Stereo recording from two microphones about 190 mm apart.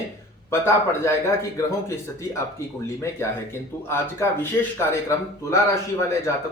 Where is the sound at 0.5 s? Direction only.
15° left (ahead or behind).